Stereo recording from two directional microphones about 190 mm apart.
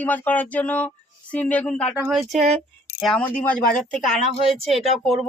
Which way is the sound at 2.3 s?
35° right (ahead or behind).